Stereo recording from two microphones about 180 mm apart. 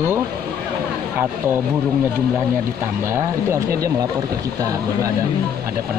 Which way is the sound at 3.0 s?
15° right (ahead or behind).